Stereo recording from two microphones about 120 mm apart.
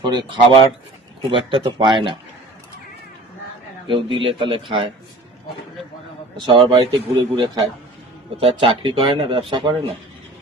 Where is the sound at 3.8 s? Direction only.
45° right (ahead or behind).